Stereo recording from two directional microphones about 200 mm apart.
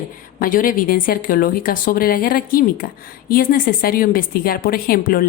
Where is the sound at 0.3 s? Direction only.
45° left (ahead or behind).